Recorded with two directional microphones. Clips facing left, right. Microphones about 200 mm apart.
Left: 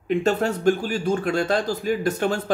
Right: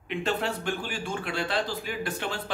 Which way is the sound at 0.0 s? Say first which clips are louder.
Left 8 dB; 40° left (ahead or behind).